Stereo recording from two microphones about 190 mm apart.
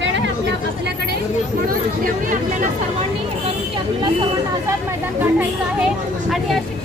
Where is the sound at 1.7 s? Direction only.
45° right (ahead or behind).